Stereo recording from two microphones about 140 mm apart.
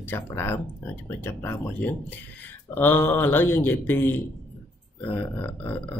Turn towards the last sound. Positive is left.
turn(degrees=15)  # may be behind; listen again after turning